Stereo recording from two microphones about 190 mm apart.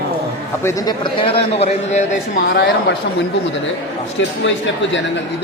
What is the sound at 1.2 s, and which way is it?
Speech, 30° left (ahead or behind).